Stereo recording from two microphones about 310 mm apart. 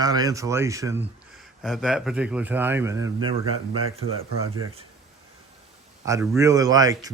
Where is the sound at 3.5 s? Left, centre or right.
Right.